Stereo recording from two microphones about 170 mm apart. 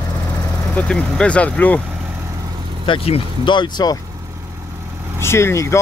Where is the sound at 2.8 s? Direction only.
35° left (ahead or behind).